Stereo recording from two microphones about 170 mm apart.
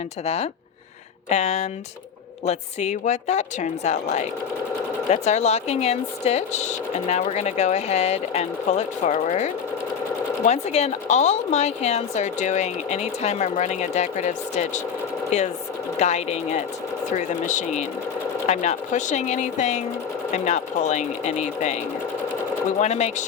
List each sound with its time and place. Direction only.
1.3 s a woman's voice: 40° left (ahead or behind)
16.0 s a woman's voice: 40° left (ahead or behind)
22.8 s speech: 40° left (ahead or behind)